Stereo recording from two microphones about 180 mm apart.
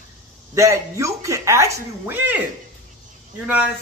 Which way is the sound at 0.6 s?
15° right (ahead or behind).